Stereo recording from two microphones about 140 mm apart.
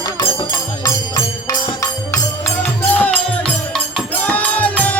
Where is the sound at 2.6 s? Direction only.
10° left (ahead or behind).